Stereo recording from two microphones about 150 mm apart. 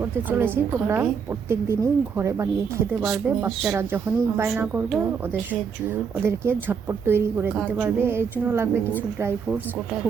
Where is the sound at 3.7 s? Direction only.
15° right (ahead or behind).